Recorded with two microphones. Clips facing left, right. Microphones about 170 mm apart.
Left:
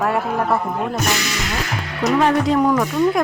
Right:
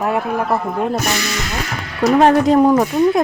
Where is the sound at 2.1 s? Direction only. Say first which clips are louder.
Right 5 dB; 45° right (ahead or behind).